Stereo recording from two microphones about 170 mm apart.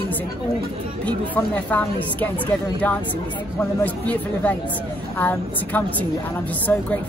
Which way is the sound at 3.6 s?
10° left (ahead or behind).